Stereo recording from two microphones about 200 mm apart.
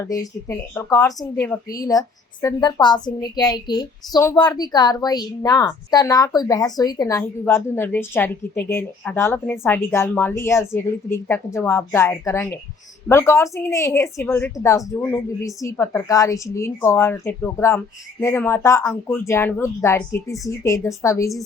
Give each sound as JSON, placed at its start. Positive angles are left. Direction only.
{"t": 0.0, "sound": "a woman's voice", "side_deg": 15}